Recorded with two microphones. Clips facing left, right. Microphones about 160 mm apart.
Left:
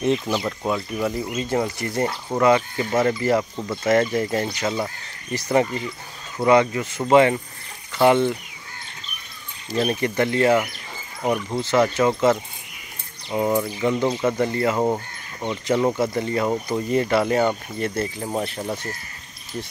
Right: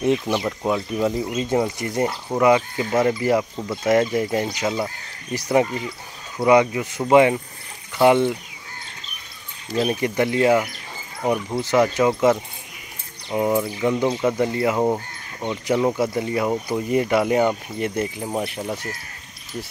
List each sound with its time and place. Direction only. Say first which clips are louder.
0.0 s speech: right 1 dB; 15° right (ahead or behind)
9.8 s speech: right 1 dB; 10° right (ahead or behind)